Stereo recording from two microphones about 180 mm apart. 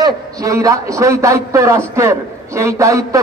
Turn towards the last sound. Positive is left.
turn(degrees=-15)  # may be behind; listen again after turning